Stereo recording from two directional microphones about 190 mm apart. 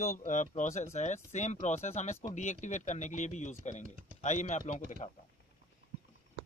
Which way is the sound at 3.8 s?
45° right (ahead or behind).